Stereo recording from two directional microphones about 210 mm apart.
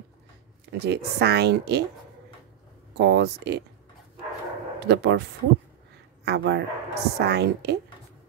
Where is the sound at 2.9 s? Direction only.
50° right (ahead or behind).